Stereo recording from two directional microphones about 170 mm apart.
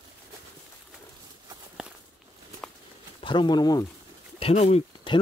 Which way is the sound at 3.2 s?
30° left (ahead or behind).